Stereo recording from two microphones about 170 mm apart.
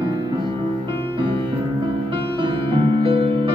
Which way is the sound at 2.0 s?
30° right (ahead or behind).